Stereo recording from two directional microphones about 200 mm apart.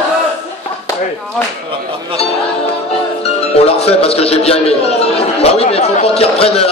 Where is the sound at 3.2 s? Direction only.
30° left (ahead or behind).